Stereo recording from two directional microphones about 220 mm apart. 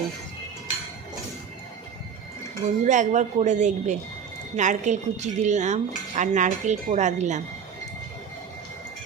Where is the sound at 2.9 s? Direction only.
35° right (ahead or behind).